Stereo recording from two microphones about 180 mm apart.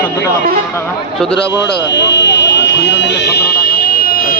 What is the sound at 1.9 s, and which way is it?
Buzzer, 75° left (ahead or behind).